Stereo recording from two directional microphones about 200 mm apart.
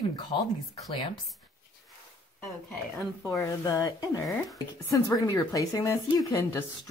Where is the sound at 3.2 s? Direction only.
15° left (ahead or behind).